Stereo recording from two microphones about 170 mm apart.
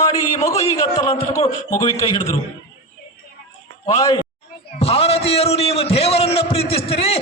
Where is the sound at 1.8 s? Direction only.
20° left (ahead or behind).